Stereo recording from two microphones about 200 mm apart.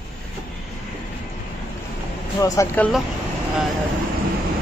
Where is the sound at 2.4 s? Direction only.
15° left (ahead or behind).